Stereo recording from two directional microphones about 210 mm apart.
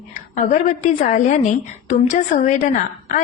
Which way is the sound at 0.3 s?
35° left (ahead or behind).